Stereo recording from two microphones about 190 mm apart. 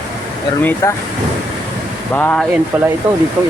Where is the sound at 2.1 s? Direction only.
10° left (ahead or behind).